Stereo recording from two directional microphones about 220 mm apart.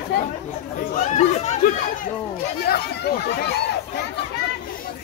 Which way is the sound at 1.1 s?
35° left (ahead or behind).